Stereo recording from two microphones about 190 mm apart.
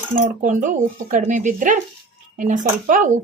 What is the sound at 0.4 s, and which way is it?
Speech, 40° right (ahead or behind).